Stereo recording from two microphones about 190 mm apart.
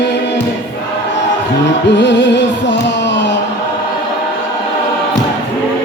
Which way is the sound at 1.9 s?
70° left (ahead or behind).